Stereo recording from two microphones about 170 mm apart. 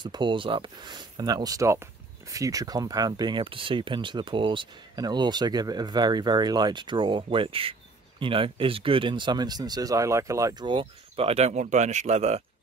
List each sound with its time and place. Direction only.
0.0 s speech: 25° right (ahead or behind)